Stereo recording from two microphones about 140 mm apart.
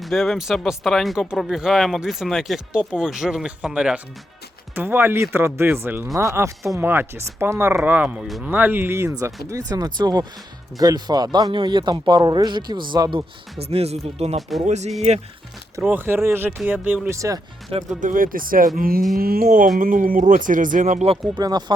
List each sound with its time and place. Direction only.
0.0 s speech: centre (ahead or behind); by 13.2 s 35° right (ahead or behind)
13.6 s speech: 45° right (ahead or behind)
15.8 s speech: 15° right (ahead or behind)
17.2 s speech: 25° right (ahead or behind)
18.0 s speech: 80° right
19.5 s speech: 70° right (ahead or behind)
21.3 s speech: 30° right (ahead or behind)